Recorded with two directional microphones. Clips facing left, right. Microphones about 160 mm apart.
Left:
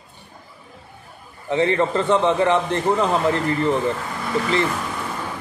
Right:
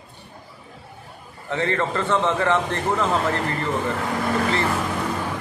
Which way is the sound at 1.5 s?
15° left (ahead or behind).